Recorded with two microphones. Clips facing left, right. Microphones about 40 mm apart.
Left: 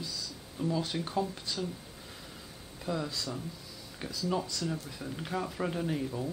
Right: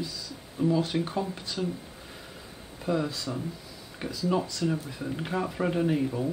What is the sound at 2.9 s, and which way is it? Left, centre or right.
Speech, centre.